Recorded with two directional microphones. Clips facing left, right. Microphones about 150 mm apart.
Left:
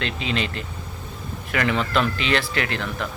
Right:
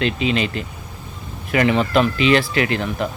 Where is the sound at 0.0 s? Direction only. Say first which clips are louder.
Right 6 dB; 15° right (ahead or behind).